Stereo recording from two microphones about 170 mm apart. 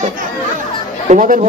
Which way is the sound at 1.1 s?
50° right (ahead or behind).